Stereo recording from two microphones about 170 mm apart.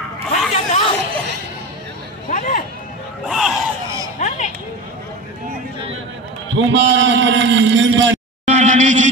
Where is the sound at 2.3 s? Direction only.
50° left (ahead or behind).